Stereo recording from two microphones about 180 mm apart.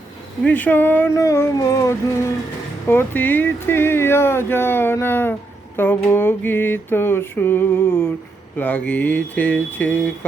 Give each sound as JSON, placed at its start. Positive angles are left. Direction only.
{"t": 0.4, "sound": "speech", "side_deg": 10}